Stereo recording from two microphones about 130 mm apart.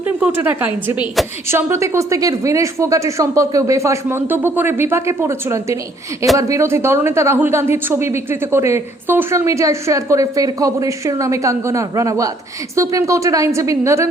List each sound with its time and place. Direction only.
0.2 s a woman's voice: 10° right (ahead or behind)